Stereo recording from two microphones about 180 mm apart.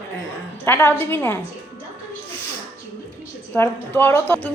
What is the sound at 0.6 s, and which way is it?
Speech, 15° left (ahead or behind).